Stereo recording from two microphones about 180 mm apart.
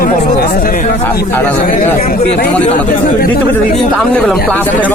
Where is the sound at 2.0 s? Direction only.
50° left (ahead or behind).